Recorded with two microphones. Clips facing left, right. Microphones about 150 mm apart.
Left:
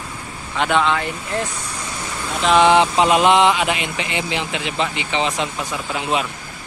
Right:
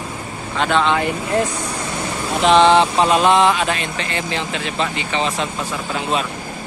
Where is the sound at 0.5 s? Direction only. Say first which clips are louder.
Right 1 dB; 15° left (ahead or behind).